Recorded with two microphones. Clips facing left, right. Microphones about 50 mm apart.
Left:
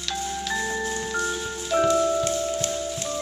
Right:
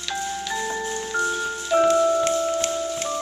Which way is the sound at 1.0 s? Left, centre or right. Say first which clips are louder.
Right 3 dB; centre.